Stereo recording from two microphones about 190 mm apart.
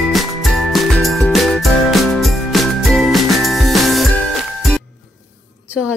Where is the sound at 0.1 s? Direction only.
Centre (ahead or behind).